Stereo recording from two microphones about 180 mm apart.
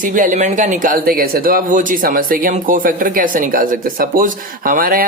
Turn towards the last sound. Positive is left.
turn(degrees=-50)  # may be behind; listen again after turning